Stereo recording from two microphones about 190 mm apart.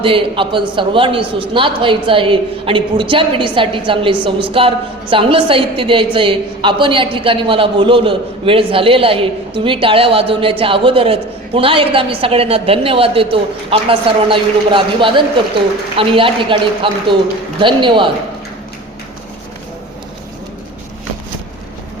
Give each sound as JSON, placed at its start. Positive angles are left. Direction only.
{"t": 0.0, "sound": "a man's voice", "side_deg": -25}